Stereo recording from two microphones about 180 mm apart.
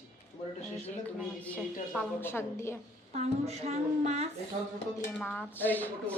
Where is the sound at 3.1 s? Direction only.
35° right (ahead or behind).